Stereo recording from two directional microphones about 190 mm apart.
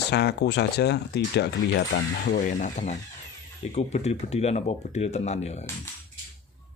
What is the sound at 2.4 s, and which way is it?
Speech, 40° left (ahead or behind).